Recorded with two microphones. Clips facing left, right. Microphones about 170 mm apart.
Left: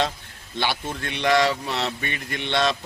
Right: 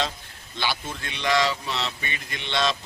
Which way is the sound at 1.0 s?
55° left (ahead or behind).